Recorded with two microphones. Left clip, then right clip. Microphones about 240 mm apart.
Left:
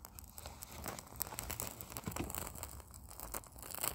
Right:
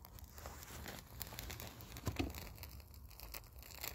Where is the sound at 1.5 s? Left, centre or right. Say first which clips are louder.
Left 5 dB; left.